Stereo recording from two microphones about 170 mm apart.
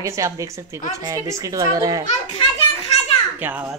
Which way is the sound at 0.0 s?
20° right (ahead or behind).